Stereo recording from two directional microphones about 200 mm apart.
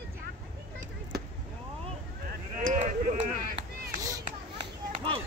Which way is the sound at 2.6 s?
40° right (ahead or behind).